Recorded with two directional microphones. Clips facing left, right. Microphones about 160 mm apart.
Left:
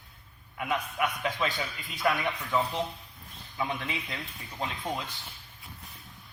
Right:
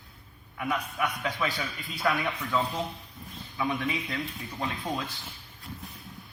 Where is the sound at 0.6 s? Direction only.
20° left (ahead or behind).